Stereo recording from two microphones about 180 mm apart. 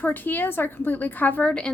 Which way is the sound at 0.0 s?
10° left (ahead or behind).